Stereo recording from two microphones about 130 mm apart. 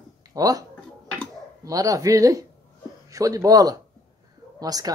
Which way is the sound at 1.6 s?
25° right (ahead or behind).